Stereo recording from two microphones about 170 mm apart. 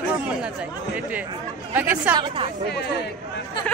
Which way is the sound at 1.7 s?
10° right (ahead or behind).